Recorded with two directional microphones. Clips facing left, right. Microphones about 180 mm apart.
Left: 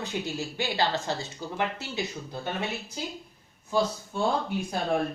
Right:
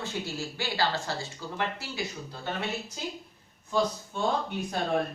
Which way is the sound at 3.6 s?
10° left (ahead or behind).